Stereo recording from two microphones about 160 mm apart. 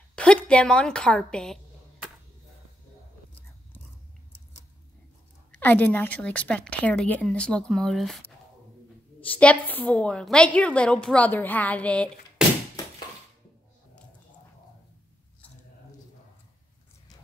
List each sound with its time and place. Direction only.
0.1 s a woman's voice: 5° left (ahead or behind)
5.5 s a woman's voice: 10° left (ahead or behind)
9.4 s a woman's voice: 10° left (ahead or behind)
12.4 s a sound: 5° right (ahead or behind)